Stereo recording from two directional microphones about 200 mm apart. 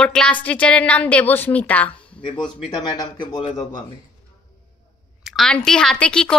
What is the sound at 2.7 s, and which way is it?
Speech, 20° left (ahead or behind).